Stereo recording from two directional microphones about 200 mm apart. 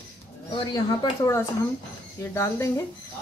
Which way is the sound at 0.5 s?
20° left (ahead or behind).